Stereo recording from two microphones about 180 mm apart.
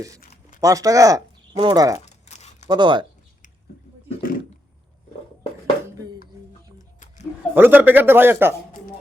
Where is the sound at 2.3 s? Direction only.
40° left (ahead or behind).